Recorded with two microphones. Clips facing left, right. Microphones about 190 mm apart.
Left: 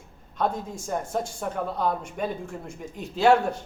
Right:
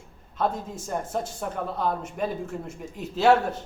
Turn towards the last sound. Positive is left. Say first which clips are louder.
# even
turn(degrees=-5)  # may be behind; listen again after turning